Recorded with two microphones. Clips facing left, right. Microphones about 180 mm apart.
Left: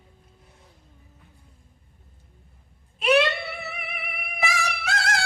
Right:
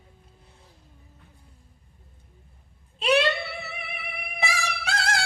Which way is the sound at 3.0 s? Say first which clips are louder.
Left 2 dB; 30° right (ahead or behind).